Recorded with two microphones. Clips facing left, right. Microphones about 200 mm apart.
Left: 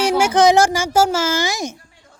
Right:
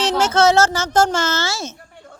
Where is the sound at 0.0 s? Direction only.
10° left (ahead or behind).